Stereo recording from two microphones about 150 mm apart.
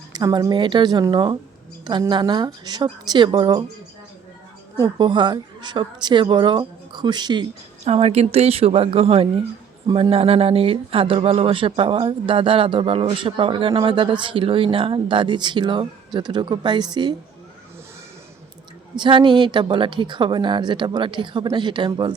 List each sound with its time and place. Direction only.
0.1 s speech: 25° right (ahead or behind)
4.8 s speech: 30° right (ahead or behind)
7.9 s speech: 40° right (ahead or behind)
18.9 s speech: 30° right (ahead or behind)